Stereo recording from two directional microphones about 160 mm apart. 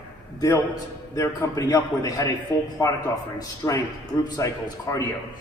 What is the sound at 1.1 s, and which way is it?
A man's voice, 20° left (ahead or behind).